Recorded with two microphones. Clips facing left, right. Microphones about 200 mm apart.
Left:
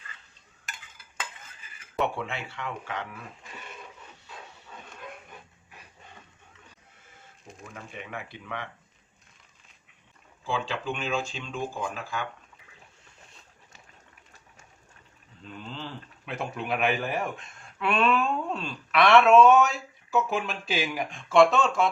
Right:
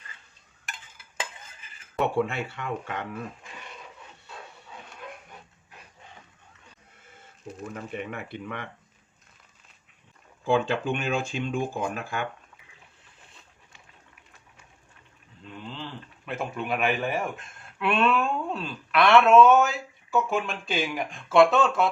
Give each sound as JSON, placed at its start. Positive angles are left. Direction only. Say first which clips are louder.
{"t": 2.0, "sound": "speech", "louder": "right 4 dB", "side_deg": -55}
{"t": 7.9, "sound": "speech", "louder": "right 2 dB", "side_deg": -55}
{"t": 10.4, "sound": "speech", "louder": "right 7 dB", "side_deg": -55}
{"t": 15.4, "sound": "a man's voice", "louder": "even", "side_deg": 0}